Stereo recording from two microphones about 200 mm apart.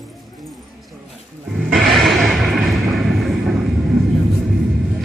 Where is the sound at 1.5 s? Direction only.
Centre (ahead or behind).